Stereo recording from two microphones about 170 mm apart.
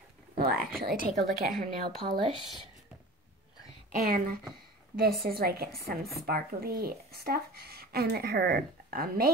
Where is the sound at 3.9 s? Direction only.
55° right (ahead or behind).